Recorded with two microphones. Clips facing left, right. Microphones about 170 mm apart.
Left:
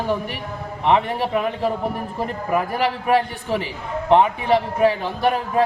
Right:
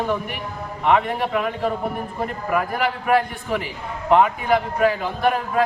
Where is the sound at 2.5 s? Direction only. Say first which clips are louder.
Left 1 dB; 30° left (ahead or behind).